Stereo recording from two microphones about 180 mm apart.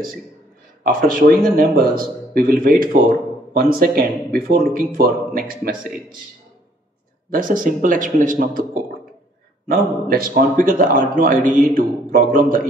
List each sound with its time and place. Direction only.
0.8 s a man's voice: 50° right (ahead or behind)
7.2 s a man's voice: 50° right (ahead or behind)
9.7 s a man's voice: 55° right (ahead or behind)